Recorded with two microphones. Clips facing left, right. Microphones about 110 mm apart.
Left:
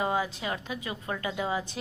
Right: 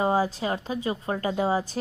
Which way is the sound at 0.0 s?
35° right (ahead or behind).